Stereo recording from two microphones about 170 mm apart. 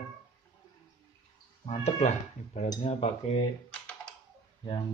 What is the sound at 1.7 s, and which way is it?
Speech, 40° left (ahead or behind).